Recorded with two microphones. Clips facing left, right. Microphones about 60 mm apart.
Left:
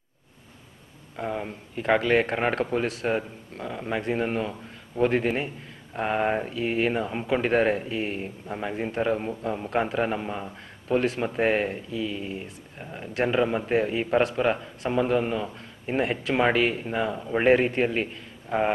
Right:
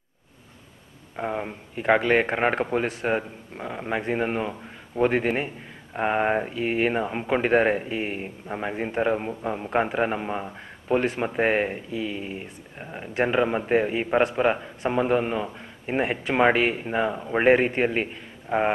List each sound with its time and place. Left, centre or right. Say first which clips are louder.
1.1 s a man's voice: right 2 dB; right